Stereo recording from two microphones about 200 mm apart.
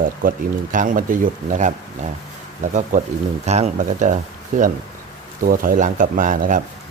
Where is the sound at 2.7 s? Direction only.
35° right (ahead or behind).